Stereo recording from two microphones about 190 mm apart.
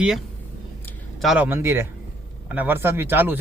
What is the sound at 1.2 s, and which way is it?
Speech, 5° right (ahead or behind).